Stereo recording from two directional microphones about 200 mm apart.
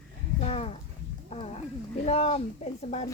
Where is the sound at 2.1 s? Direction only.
30° left (ahead or behind).